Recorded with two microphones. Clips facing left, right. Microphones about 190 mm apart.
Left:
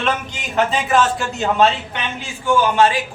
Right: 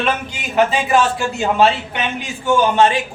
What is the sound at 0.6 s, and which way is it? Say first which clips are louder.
A man's voice: right 2 dB; 5° right (ahead or behind).